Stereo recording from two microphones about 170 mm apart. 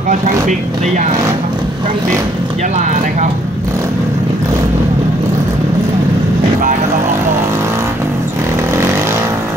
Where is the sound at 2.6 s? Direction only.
45° right (ahead or behind).